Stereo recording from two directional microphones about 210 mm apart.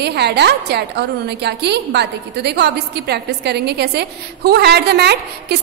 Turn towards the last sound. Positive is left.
turn(degrees=-50)  # may be behind; listen again after turning